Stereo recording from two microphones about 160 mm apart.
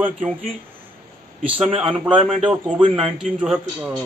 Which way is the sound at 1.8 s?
35° right (ahead or behind).